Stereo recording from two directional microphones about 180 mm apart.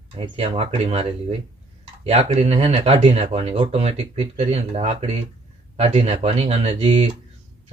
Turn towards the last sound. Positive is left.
turn(degrees=-35)  # may be behind; listen again after turning